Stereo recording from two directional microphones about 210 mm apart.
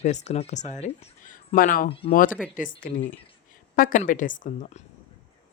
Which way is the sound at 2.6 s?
40° left (ahead or behind).